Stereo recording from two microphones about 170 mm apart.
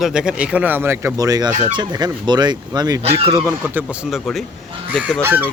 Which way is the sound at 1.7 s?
25° right (ahead or behind).